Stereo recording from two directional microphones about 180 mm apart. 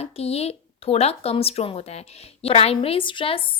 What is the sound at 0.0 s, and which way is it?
A woman's voice, 35° left (ahead or behind).